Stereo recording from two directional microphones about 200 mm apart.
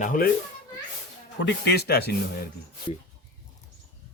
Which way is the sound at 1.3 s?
60° left (ahead or behind).